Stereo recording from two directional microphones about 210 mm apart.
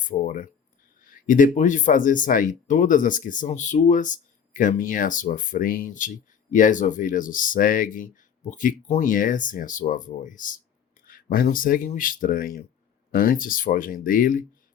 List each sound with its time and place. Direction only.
0.0 s speech: 40° left (ahead or behind)